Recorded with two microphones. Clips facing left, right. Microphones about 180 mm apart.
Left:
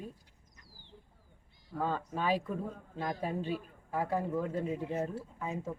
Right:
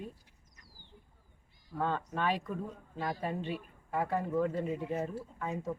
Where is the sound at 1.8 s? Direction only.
5° left (ahead or behind).